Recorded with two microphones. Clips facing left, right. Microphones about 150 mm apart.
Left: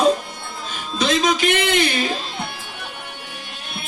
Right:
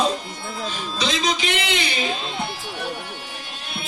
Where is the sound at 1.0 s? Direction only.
50° left (ahead or behind).